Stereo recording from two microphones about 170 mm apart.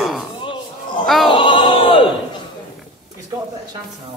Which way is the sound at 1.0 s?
Centre (ahead or behind).